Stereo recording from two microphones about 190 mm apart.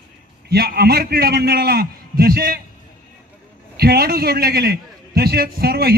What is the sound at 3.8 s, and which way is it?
A man's voice, 55° right (ahead or behind).